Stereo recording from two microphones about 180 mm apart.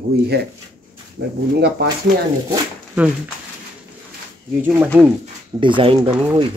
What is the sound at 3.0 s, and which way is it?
Speech, 5° right (ahead or behind).